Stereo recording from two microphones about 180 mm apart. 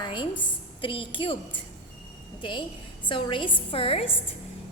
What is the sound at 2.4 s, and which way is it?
A woman's voice, 25° left (ahead or behind).